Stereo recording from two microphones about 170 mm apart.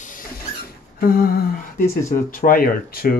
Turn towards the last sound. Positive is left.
turn(degrees=60)  # may be behind; listen again after turning